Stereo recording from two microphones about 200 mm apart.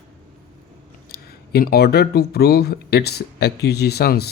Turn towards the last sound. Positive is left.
turn(degrees=55)  # may be behind; listen again after turning